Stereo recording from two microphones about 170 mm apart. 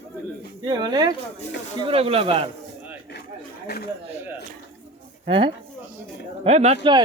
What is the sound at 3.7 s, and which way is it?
Speech, 75° left (ahead or behind).